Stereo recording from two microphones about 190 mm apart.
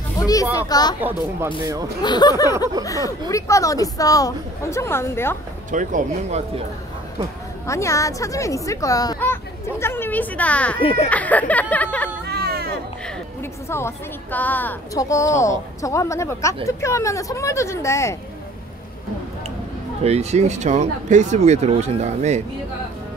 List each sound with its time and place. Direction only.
0.2 s speech: 20° left (ahead or behind)
2.0 s a woman's voice: 20° left (ahead or behind)
5.7 s speech: 40° right (ahead or behind)
7.6 s a woman's voice: 15° left (ahead or behind)
10.8 s speech: 30° left (ahead or behind)
11.1 s a woman's voice: 10° left (ahead or behind)
12.3 s baby cry: 55° right (ahead or behind)
13.0 s a woman's voice: 15° left (ahead or behind)
20.0 s speech: 35° right (ahead or behind)